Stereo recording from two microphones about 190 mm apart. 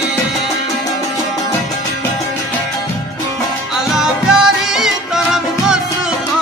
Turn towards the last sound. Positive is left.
turn(degrees=-5)  # may be behind; listen again after turning